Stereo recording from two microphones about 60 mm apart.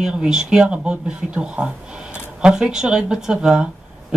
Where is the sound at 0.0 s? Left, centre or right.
Centre.